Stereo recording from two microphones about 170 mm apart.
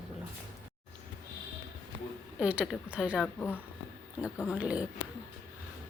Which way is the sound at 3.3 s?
10° left (ahead or behind).